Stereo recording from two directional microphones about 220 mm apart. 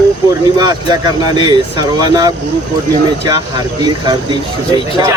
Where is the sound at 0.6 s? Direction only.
20° right (ahead or behind).